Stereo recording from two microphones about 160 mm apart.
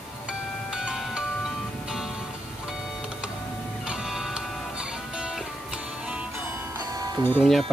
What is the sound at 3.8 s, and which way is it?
Music, 5° right (ahead or behind).